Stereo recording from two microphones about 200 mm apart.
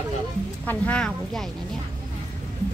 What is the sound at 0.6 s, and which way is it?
Speech, 10° left (ahead or behind).